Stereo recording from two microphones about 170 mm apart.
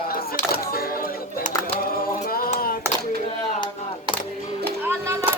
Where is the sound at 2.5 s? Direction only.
55° left (ahead or behind).